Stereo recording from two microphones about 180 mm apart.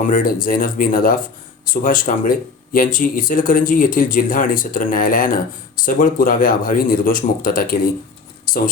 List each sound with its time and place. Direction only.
0.0 s speech: 50° left (ahead or behind)